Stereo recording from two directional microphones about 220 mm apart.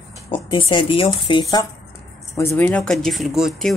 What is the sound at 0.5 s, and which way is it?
Speech, 25° left (ahead or behind).